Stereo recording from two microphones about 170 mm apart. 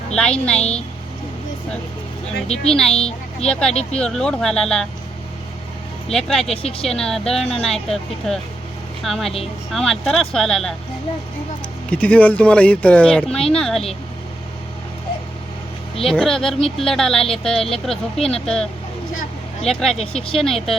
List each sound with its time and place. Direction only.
0.2 s a woman's voice: 5° left (ahead or behind)
2.9 s speech: 35° left (ahead or behind)
3.5 s a woman's voice: 5° left (ahead or behind)
6.1 s a woman's voice: centre (ahead or behind)
6.4 s speech: 35° left (ahead or behind)
6.8 s a woman's voice: 5° left (ahead or behind)
11.9 s speech: 5° left (ahead or behind)
16.0 s a woman's voice: 5° left (ahead or behind)
20.0 s speech: 35° left (ahead or behind)
20.4 s a woman's voice: centre (ahead or behind)